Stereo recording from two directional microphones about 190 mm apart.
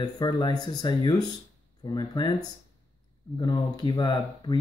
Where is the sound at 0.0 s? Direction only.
20° left (ahead or behind).